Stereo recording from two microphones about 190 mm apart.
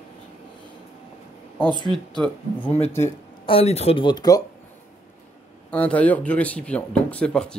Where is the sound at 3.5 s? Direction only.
30° left (ahead or behind).